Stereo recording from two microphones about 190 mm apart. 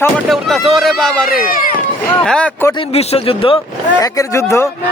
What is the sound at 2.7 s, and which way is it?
Speech, 30° left (ahead or behind).